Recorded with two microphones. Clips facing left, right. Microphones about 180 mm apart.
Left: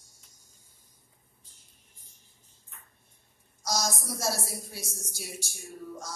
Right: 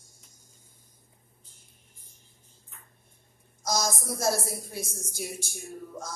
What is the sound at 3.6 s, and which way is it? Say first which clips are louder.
A woman's voice: right 2 dB; 50° right (ahead or behind).